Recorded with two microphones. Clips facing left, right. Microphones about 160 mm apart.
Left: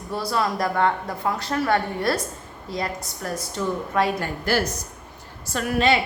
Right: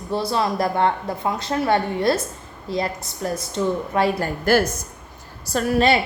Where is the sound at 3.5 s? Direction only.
30° right (ahead or behind).